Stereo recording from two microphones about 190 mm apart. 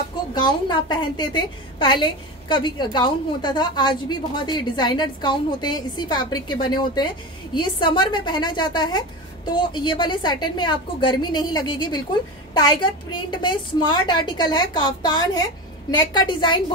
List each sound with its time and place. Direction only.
0.3 s a woman's voice: 25° left (ahead or behind)